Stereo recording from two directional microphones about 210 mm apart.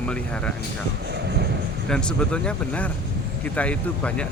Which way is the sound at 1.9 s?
5° left (ahead or behind).